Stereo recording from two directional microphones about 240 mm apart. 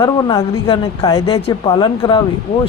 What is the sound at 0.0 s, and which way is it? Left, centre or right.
A woman's voice, centre.